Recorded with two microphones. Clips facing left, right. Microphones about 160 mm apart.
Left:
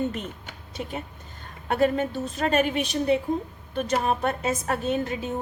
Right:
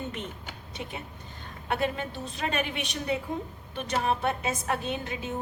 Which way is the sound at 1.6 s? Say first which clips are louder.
Left 7 dB; 45° left (ahead or behind).